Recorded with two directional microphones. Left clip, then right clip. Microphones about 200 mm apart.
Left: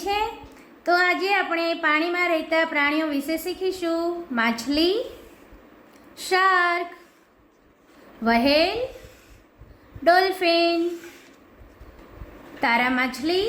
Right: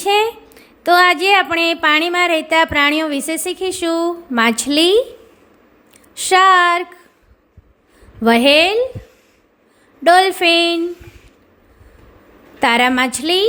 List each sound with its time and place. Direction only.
0.0 s a woman's voice: 50° right (ahead or behind)
6.1 s a woman's voice: 50° right (ahead or behind)
8.2 s a woman's voice: 50° right (ahead or behind)
10.0 s a woman's voice: 50° right (ahead or behind)
12.5 s a woman's voice: 50° right (ahead or behind)